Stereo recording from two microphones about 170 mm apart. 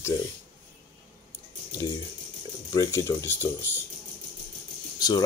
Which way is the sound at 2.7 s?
15° left (ahead or behind).